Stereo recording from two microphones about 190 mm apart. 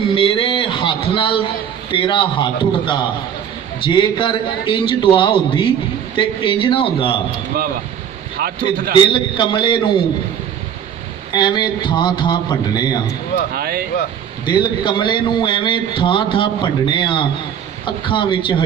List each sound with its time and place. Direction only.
0.1 s a sound: 25° left (ahead or behind)
1.9 s a man's voice: 25° left (ahead or behind)
8.4 s a man's voice: 55° right (ahead or behind)
9.1 s a man's voice: 25° left (ahead or behind)
11.3 s a man's voice: 25° left (ahead or behind)
13.5 s a man's voice: 50° right (ahead or behind)
14.4 s a man's voice: 25° left (ahead or behind)